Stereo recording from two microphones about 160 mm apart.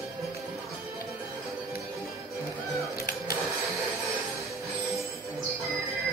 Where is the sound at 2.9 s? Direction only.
75° left (ahead or behind).